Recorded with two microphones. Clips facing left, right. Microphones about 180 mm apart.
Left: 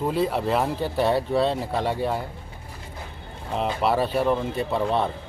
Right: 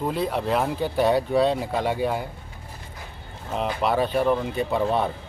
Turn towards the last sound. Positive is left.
turn(degrees=0)  # may be behind; listen again after turning